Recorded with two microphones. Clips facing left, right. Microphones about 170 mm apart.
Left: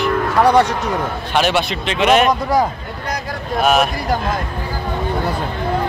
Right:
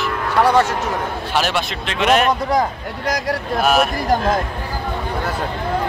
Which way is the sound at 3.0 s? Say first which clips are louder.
Right 5 dB; 90° right.